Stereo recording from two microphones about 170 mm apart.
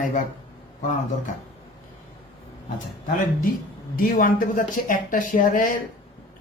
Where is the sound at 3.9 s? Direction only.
55° left (ahead or behind).